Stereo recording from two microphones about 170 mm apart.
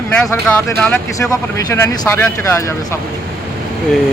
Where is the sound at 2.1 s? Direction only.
15° left (ahead or behind).